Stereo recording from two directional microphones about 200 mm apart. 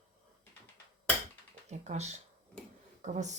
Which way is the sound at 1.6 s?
35° right (ahead or behind).